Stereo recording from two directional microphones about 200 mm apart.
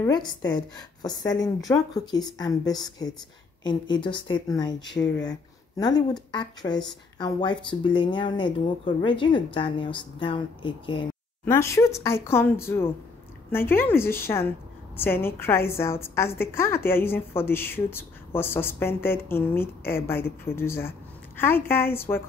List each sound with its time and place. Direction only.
0.0 s speech: 20° left (ahead or behind)
11.4 s a woman's voice: 15° left (ahead or behind)